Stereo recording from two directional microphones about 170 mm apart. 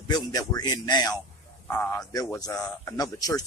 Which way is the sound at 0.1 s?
20° left (ahead or behind).